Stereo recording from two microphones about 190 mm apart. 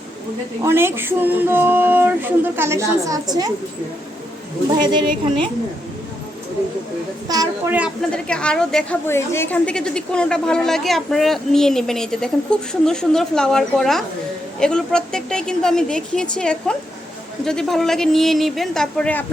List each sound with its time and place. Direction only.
0.6 s speech: 15° right (ahead or behind)
4.8 s a woman's voice: 25° right (ahead or behind)
7.3 s a woman's voice: 20° right (ahead or behind)
8.1 s a woman's voice: 5° left (ahead or behind)